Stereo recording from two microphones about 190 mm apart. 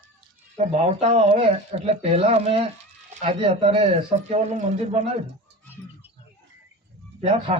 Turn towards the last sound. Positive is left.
turn(degrees=-30)  # may be behind; listen again after turning